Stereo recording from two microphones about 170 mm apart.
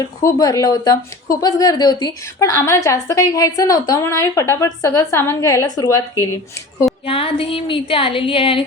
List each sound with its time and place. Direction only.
0.2 s a woman's voice: 20° left (ahead or behind)
7.0 s a woman's voice: 35° left (ahead or behind)